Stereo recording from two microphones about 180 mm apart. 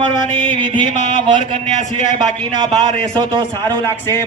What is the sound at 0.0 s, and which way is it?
Speech, 25° right (ahead or behind).